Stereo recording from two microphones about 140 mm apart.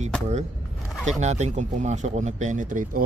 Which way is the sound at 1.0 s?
55° right (ahead or behind).